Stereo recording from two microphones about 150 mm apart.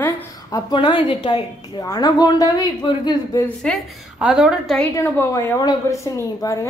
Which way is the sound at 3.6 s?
5° left (ahead or behind).